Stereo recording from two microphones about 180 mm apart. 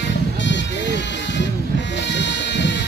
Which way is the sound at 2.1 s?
80° left.